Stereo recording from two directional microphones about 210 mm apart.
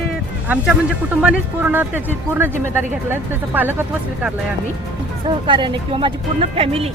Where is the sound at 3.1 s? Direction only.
10° right (ahead or behind).